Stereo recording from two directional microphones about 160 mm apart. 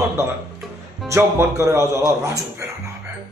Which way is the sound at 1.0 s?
20° right (ahead or behind).